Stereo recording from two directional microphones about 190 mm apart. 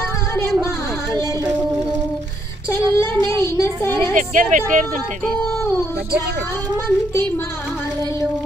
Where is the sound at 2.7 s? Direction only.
15° left (ahead or behind).